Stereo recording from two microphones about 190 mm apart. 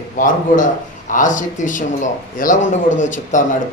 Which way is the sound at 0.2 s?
45° left (ahead or behind).